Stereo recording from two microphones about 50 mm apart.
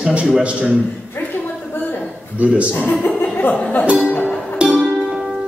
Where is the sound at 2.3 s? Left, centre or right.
Right.